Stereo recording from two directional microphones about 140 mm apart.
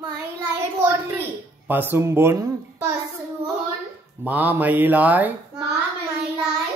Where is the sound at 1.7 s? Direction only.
15° right (ahead or behind).